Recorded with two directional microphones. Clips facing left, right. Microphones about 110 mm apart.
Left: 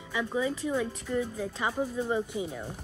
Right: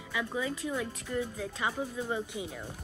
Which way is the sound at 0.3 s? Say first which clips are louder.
Left 6 dB; 20° left (ahead or behind).